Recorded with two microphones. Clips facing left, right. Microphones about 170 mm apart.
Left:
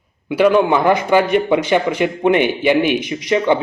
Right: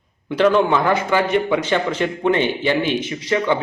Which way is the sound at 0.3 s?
10° left (ahead or behind).